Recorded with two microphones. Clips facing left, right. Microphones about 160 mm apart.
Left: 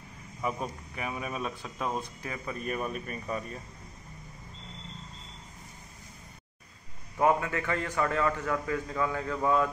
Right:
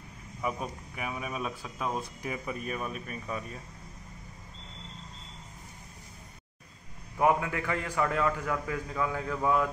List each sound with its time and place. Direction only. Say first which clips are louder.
0.4 s speech: left 1 dB; 5° right (ahead or behind)
2.2 s a man's voice: right 2 dB; 15° right (ahead or behind)
2.6 s speech: left 2 dB; centre (ahead or behind)
7.2 s a man's voice: even; 10° right (ahead or behind)